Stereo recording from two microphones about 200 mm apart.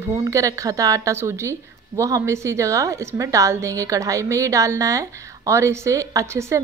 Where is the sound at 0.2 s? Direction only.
15° right (ahead or behind).